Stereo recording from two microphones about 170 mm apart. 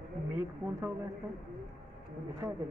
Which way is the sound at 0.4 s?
15° right (ahead or behind).